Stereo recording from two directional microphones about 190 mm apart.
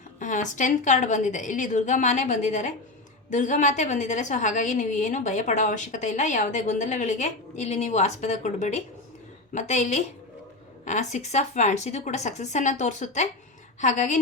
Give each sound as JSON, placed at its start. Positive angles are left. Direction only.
{"t": 0.2, "sound": "a woman's voice", "side_deg": 40}